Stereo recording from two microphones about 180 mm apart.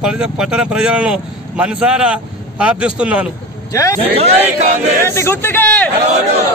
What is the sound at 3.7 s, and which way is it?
Speech, 20° left (ahead or behind).